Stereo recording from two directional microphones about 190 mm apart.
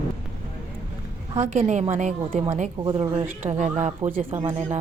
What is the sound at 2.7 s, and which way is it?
Speech, 20° right (ahead or behind).